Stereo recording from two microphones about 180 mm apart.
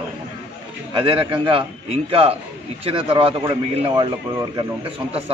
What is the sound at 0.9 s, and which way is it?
A man's voice, 30° right (ahead or behind).